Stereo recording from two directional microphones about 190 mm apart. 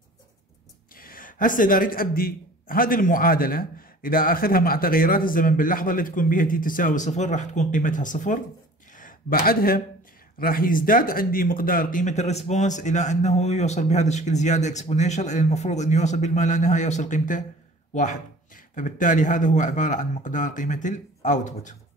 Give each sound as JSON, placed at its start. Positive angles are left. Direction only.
{"t": 0.9, "sound": "a man's voice", "side_deg": 50}